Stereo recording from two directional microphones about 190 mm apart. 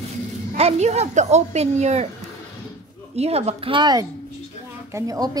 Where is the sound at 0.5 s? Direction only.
35° right (ahead or behind).